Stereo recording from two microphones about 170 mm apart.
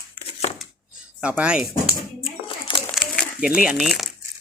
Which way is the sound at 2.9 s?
Centre (ahead or behind).